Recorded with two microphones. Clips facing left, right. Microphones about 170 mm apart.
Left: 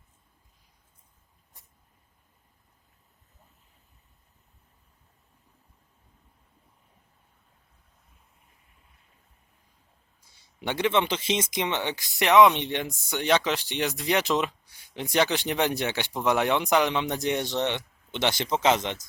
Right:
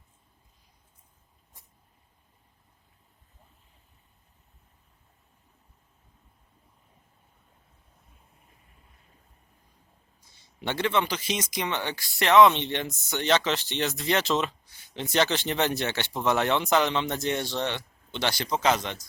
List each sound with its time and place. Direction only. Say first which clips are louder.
10.2 s speech: left 1 dB; 15° left (ahead or behind)